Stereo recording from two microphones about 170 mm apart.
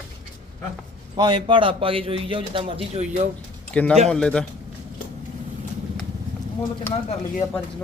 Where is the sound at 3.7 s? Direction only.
5° left (ahead or behind).